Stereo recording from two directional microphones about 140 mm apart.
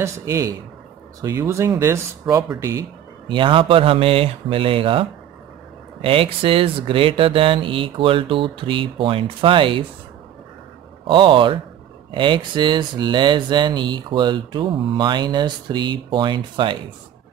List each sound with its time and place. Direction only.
0.0 s speech: 20° right (ahead or behind)
3.3 s speech: 35° right (ahead or behind)
6.0 s speech: 40° right (ahead or behind)
11.1 s speech: 35° right (ahead or behind)